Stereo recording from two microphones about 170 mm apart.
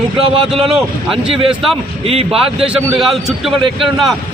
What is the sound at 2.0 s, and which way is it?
Speech, 35° right (ahead or behind).